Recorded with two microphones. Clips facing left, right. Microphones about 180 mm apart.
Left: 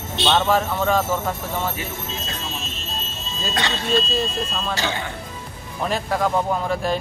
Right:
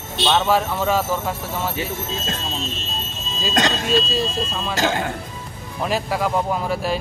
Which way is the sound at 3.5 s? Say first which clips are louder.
Right 5 dB; 45° right (ahead or behind).